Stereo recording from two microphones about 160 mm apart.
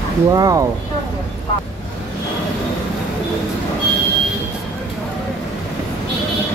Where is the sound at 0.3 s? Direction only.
20° right (ahead or behind).